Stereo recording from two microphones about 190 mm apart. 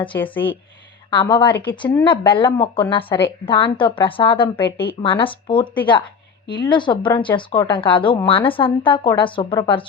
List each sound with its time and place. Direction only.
0.2 s speech: 10° left (ahead or behind)
1.1 s speech: 25° left (ahead or behind)